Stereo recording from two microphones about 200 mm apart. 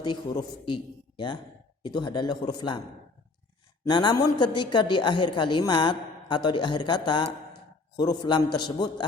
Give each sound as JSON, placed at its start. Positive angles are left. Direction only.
{"t": 0.0, "sound": "a woman's voice", "side_deg": 25}
{"t": 3.8, "sound": "a woman's voice", "side_deg": 20}